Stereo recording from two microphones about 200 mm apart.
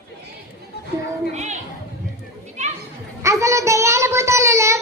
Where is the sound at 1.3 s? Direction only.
35° right (ahead or behind).